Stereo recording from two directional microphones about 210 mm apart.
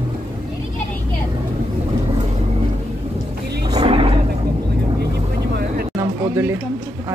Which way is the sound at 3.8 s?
25° right (ahead or behind).